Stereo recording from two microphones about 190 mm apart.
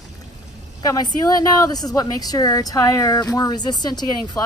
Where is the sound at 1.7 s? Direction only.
20° left (ahead or behind).